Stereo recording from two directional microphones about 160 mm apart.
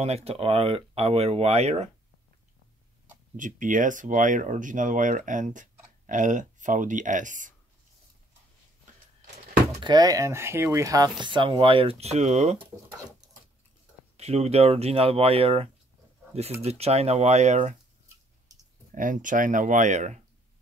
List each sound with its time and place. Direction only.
0.0 s speech: 40° right (ahead or behind)
3.3 s speech: 55° right (ahead or behind)
9.8 s speech: 25° right (ahead or behind); by 12.6 s 45° right (ahead or behind)
14.1 s speech: 40° right (ahead or behind)
18.9 s speech: 55° right (ahead or behind)